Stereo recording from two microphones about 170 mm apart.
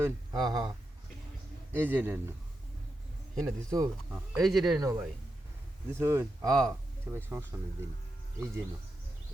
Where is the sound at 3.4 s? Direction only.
20° right (ahead or behind).